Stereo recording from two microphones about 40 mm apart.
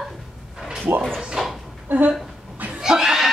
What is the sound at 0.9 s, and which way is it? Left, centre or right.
Speech, right.